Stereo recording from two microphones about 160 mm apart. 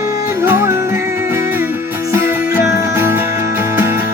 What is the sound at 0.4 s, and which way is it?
Music, 15° right (ahead or behind).